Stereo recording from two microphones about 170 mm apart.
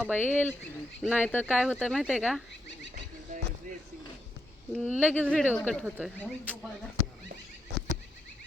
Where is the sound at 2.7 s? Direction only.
90° left.